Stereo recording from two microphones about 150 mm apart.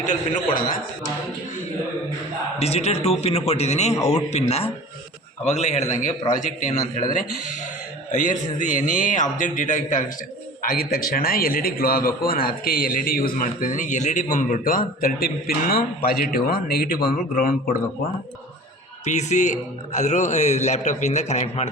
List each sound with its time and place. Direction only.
0.0 s a man's voice: 60° left (ahead or behind)
2.6 s a man's voice: 45° left (ahead or behind)
8.1 s a man's voice: 60° left (ahead or behind)
10.6 s a man's voice: 70° left (ahead or behind)
19.0 s a man's voice: 50° left (ahead or behind)